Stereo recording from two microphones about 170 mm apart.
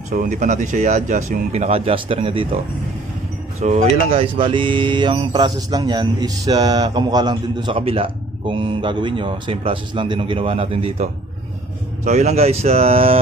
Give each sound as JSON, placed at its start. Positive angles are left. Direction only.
{"t": 0.1, "sound": "speech", "side_deg": -50}
{"t": 3.6, "sound": "speech", "side_deg": -40}